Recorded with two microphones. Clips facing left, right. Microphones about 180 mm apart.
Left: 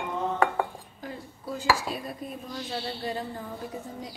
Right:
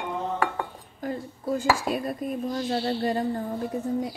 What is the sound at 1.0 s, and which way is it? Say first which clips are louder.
Speech: right 8 dB; 50° right (ahead or behind).